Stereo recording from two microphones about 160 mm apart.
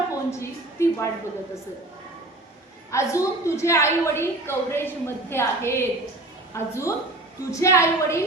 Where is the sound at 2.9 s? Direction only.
20° left (ahead or behind).